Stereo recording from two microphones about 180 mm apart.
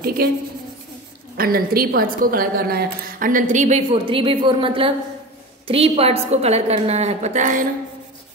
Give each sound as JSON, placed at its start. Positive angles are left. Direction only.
{"t": 0.2, "sound": "a woman's voice", "side_deg": -55}